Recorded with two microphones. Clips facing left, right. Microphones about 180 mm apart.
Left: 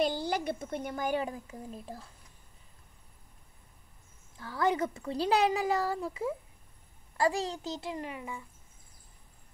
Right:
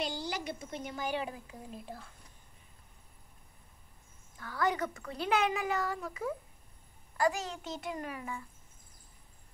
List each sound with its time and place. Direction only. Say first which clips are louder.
0.0 s a child's voice: left 7 dB; 55° left (ahead or behind); by 2.0 s 40° left (ahead or behind)
4.4 s a child's voice: left 3 dB; 25° left (ahead or behind)